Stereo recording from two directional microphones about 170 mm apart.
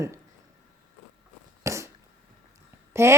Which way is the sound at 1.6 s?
15° right (ahead or behind).